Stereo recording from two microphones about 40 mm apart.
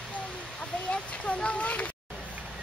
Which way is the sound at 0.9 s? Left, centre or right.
Left.